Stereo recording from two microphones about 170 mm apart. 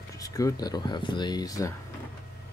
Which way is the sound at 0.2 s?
20° left (ahead or behind).